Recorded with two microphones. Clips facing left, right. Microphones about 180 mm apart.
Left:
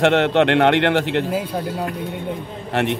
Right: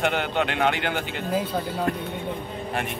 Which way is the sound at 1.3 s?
5° left (ahead or behind).